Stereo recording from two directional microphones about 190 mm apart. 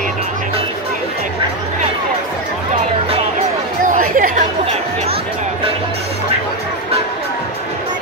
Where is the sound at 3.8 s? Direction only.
45° right (ahead or behind).